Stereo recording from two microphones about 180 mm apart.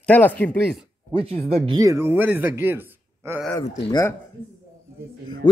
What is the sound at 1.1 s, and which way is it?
Speech, 35° right (ahead or behind).